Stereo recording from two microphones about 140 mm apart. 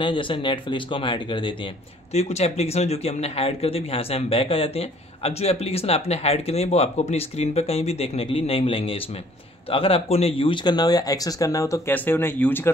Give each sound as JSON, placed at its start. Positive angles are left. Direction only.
{"t": 0.0, "sound": "speech", "side_deg": 35}
{"t": 2.1, "sound": "speech", "side_deg": 50}